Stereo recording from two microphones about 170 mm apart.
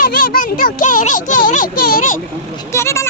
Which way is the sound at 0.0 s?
55° left (ahead or behind).